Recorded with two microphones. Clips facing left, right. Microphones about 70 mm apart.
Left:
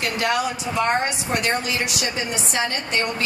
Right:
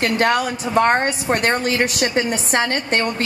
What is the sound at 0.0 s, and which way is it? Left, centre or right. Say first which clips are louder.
A woman's voice: right 5 dB; right.